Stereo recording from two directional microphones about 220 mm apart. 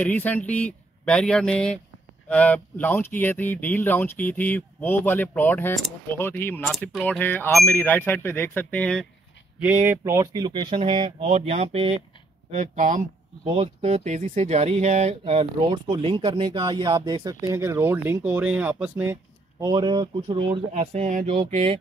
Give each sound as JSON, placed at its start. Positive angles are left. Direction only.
{"t": 0.0, "sound": "speech", "side_deg": 5}
{"t": 9.8, "sound": "speech", "side_deg": -15}
{"t": 19.6, "sound": "speech", "side_deg": -20}